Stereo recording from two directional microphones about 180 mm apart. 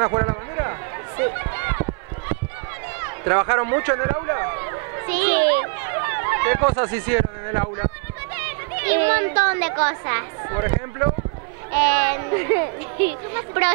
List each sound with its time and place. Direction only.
0.0 s run: 25° right (ahead or behind)
8.4 s speech: 15° right (ahead or behind)